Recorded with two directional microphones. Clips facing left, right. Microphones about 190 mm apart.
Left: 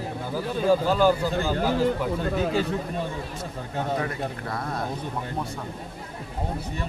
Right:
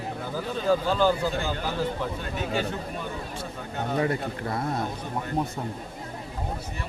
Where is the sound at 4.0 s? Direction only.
25° right (ahead or behind).